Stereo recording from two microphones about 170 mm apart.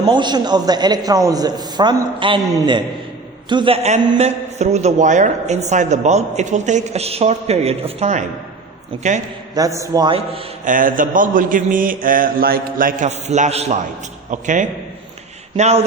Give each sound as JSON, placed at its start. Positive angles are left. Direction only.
{"t": 0.0, "sound": "a man's voice", "side_deg": -25}
{"t": 3.8, "sound": "a woman's voice", "side_deg": -40}
{"t": 9.6, "sound": "a man's voice", "side_deg": -20}
{"t": 10.6, "sound": "a man's voice", "side_deg": -50}